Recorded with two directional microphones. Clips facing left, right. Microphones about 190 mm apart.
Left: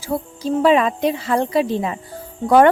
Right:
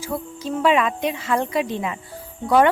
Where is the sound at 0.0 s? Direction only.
35° left (ahead or behind).